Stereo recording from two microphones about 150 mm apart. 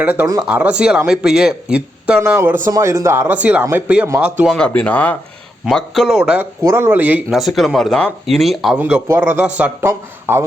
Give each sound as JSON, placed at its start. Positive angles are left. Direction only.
{"t": 0.0, "sound": "speech", "side_deg": -10}
{"t": 2.2, "sound": "speech", "side_deg": -20}
{"t": 4.4, "sound": "speech", "side_deg": 5}
{"t": 5.6, "sound": "speech", "side_deg": 0}
{"t": 6.6, "sound": "speech", "side_deg": -20}
{"t": 8.8, "sound": "speech", "side_deg": -15}